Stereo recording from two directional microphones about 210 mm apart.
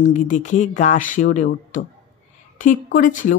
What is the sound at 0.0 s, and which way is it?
Speech, 35° left (ahead or behind).